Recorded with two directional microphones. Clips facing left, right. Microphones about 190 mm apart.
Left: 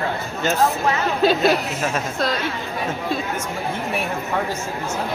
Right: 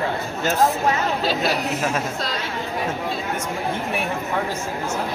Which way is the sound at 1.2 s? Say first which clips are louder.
Left 6 dB; 55° left (ahead or behind).